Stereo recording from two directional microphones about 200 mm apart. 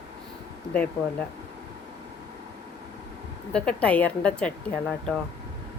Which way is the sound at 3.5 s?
5° left (ahead or behind).